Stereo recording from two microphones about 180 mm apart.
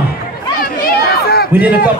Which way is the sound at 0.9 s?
60° left (ahead or behind).